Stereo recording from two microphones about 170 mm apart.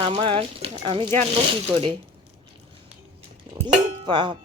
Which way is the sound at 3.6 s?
25° right (ahead or behind).